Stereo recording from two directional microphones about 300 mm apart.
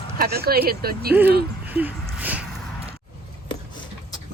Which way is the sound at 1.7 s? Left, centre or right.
Centre.